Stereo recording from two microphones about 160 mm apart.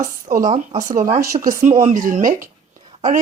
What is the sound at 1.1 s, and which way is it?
Speech, 20° right (ahead or behind).